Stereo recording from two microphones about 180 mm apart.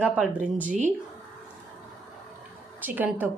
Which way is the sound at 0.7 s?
40° right (ahead or behind).